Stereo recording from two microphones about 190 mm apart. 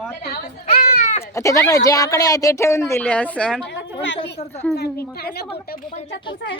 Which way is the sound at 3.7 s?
70° left (ahead or behind).